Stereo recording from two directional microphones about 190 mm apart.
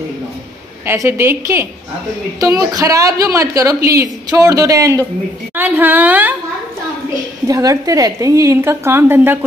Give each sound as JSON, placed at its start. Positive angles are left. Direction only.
{"t": 0.8, "sound": "a woman's voice", "side_deg": -15}
{"t": 7.4, "sound": "a woman's voice", "side_deg": -15}